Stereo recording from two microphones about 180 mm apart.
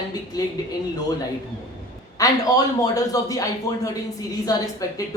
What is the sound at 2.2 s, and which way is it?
Speech, 20° left (ahead or behind).